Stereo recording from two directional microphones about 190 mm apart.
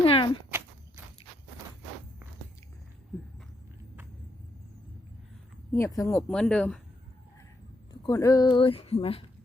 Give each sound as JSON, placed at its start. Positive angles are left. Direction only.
{"t": 0.0, "sound": "a sound", "side_deg": 30}
{"t": 5.7, "sound": "speech", "side_deg": 15}
{"t": 6.2, "sound": "speech", "side_deg": 5}
{"t": 8.0, "sound": "speech", "side_deg": 15}